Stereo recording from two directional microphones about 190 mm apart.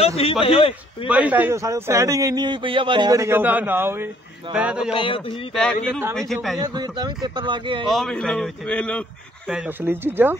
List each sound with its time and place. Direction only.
0.0 s a man's voice: 30° left (ahead or behind)
1.0 s a man's voice: 10° right (ahead or behind)
4.9 s speech: 25° left (ahead or behind)
5.5 s speech: centre (ahead or behind)
6.6 s speech: 20° right (ahead or behind)
7.8 s speech: centre (ahead or behind)
9.5 s a man's voice: 10° right (ahead or behind)